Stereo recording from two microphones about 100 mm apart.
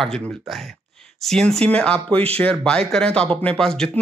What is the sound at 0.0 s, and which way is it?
Speech, centre (ahead or behind).